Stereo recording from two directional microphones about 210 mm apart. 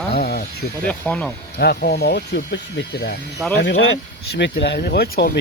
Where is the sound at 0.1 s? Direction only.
50° left (ahead or behind).